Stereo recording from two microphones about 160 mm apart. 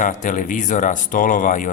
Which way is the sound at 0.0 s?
50° left (ahead or behind).